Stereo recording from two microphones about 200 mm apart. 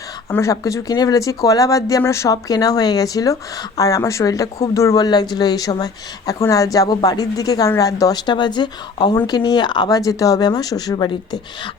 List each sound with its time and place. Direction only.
0.3 s speech: 15° left (ahead or behind)